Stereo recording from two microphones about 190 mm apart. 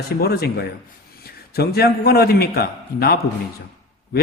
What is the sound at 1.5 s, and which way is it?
A man's voice, 55° left (ahead or behind).